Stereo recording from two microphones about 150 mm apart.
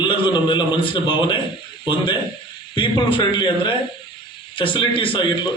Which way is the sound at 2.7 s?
35° left (ahead or behind).